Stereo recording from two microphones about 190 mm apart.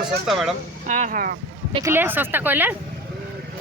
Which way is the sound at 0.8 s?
40° right (ahead or behind).